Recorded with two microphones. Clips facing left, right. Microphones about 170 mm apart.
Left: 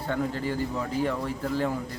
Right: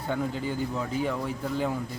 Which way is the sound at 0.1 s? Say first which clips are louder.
Left 1 dB; centre (ahead or behind).